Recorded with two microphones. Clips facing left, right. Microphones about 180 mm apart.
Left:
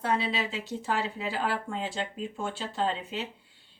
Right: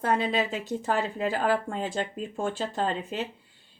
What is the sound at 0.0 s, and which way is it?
Speech, 50° right (ahead or behind).